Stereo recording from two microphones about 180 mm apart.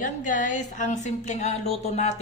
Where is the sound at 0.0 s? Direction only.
45° left (ahead or behind).